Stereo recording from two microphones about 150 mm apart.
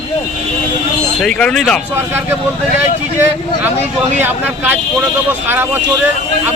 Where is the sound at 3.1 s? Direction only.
15° right (ahead or behind).